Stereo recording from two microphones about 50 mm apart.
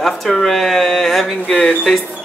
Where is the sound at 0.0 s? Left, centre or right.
Centre.